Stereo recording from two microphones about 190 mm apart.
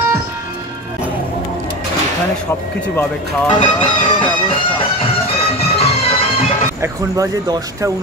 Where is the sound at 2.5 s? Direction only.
10° left (ahead or behind).